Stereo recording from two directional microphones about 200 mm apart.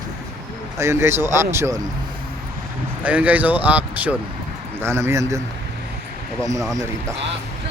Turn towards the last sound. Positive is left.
turn(degrees=-15)  # may be behind; listen again after turning